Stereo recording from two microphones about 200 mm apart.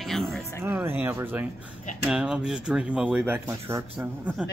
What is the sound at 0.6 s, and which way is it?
Speech, 10° right (ahead or behind).